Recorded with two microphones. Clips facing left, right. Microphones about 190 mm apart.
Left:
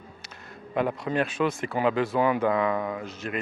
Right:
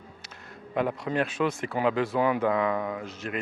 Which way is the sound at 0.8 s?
15° left (ahead or behind).